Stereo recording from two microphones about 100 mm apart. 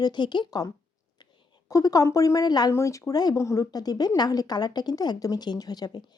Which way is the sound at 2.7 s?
30° left (ahead or behind).